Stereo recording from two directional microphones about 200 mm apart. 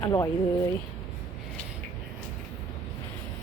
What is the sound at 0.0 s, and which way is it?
Speech, 15° left (ahead or behind).